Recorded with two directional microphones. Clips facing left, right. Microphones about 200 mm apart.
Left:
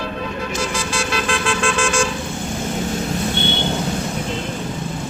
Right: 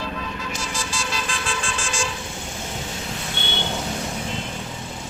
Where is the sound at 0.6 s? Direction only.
65° left (ahead or behind).